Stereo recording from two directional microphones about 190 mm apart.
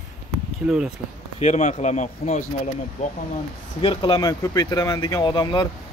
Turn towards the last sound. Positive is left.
turn(degrees=25)  # may be behind; listen again after turning